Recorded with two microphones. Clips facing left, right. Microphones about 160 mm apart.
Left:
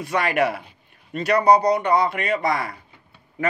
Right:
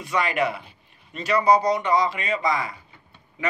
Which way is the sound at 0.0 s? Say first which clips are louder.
Left 3 dB; 60° left (ahead or behind).